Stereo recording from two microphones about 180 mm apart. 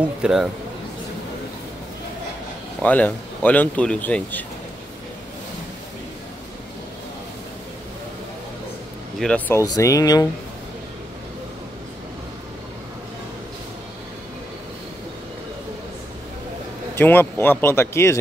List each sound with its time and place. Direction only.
0.0 s speech: 5° right (ahead or behind)
2.8 s speech: 10° left (ahead or behind)
9.2 s speech: 5° left (ahead or behind)
9.6 s speech: 20° left (ahead or behind)
16.9 s speech: 10° left (ahead or behind)